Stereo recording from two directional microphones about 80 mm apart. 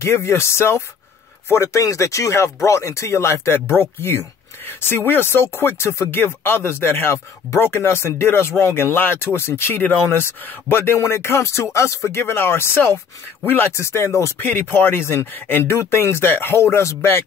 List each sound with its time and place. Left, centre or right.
0.0 s speech: left
14.4 s speech: left